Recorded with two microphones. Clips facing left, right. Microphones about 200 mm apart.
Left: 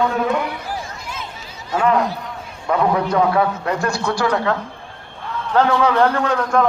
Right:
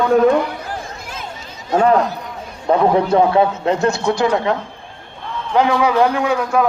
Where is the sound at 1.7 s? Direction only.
40° right (ahead or behind).